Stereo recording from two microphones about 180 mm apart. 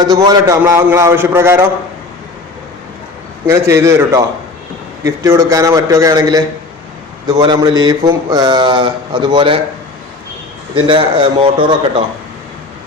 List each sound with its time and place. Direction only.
0.1 s a man's voice: 20° right (ahead or behind)
3.4 s a man's voice: 15° right (ahead or behind)
10.8 s speech: 30° right (ahead or behind)